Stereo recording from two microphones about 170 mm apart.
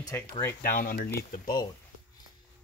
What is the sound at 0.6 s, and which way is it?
Speech, 55° left (ahead or behind).